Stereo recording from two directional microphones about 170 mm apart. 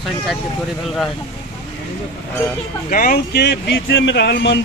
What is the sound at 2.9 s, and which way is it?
Speech, 55° left (ahead or behind).